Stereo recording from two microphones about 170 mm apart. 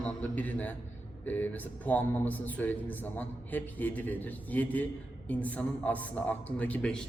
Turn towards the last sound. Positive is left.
turn(degrees=5)  # may be behind; listen again after turning